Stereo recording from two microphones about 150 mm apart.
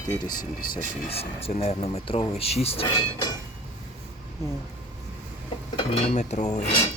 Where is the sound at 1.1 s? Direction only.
40° left (ahead or behind).